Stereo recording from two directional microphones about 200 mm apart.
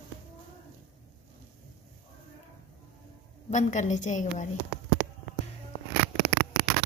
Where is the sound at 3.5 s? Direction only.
35° left (ahead or behind).